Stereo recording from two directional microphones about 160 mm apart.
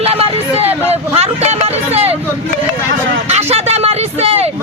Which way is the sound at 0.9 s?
40° right (ahead or behind).